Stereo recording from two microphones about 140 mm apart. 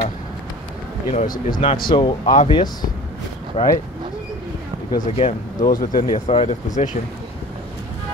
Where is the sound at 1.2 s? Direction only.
80° left.